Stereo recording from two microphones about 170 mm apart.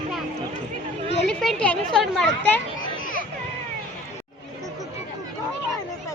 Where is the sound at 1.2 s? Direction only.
Centre (ahead or behind).